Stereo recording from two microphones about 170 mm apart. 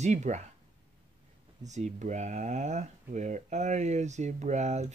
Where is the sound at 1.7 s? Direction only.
45° right (ahead or behind).